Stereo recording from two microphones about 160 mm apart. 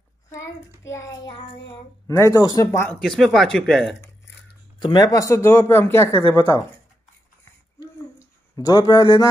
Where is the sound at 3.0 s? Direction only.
Centre (ahead or behind).